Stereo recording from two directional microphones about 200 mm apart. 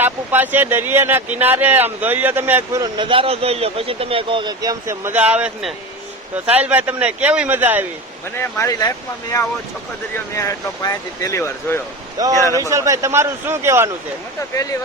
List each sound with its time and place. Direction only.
0.0 s speech: 10° right (ahead or behind)
8.4 s speech: 15° left (ahead or behind)
10.3 s speech: 15° left (ahead or behind)
12.2 s speech: 20° right (ahead or behind)
14.5 s speech: 15° left (ahead or behind)